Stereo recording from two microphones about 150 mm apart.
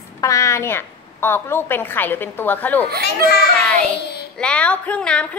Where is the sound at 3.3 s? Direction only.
90° left.